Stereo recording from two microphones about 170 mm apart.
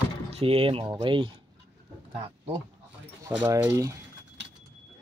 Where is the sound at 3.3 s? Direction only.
15° right (ahead or behind).